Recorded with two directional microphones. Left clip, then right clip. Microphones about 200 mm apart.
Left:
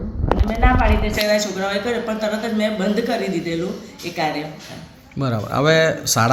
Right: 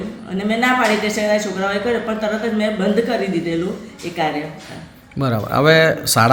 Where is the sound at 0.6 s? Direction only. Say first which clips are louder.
Right 4 dB; 25° right (ahead or behind).